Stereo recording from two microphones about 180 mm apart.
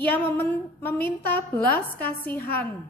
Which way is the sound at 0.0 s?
10° left (ahead or behind).